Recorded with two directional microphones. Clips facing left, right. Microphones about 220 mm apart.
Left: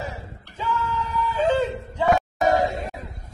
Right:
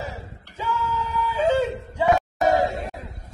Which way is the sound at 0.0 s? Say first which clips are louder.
Even; 5° right (ahead or behind).